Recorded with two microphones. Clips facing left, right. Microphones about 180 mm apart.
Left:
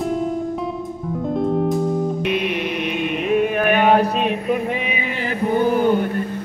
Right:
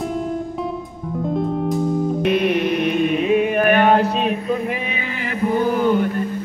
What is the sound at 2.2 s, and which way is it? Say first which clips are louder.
Mantra: right 4 dB; 45° right (ahead or behind).